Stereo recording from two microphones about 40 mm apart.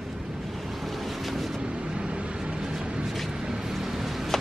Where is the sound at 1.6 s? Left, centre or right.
Right.